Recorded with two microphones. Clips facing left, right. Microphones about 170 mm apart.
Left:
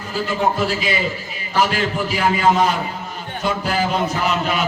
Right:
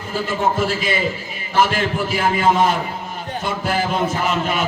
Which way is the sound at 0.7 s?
45° right (ahead or behind).